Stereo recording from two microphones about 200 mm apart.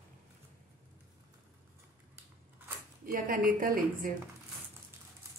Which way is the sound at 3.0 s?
45° right (ahead or behind).